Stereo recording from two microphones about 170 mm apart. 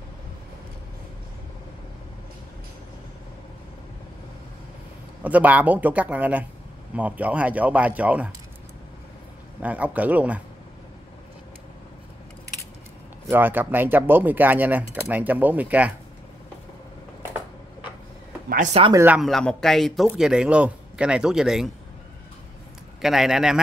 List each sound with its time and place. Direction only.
5.2 s speech: 10° right (ahead or behind)
9.6 s speech: 10° right (ahead or behind)
13.3 s speech: 10° right (ahead or behind)
18.5 s speech: 45° right (ahead or behind)
18.9 s speech: 10° right (ahead or behind)
19.2 s speech: centre (ahead or behind)
23.0 s speech: centre (ahead or behind)